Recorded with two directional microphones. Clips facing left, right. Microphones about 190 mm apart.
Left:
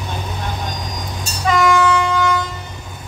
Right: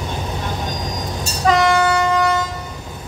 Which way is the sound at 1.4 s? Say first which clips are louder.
Even; 35° right (ahead or behind).